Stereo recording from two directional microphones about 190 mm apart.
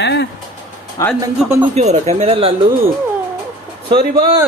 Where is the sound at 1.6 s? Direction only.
35° right (ahead or behind).